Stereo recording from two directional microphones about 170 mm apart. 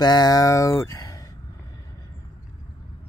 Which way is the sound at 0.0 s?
25° left (ahead or behind).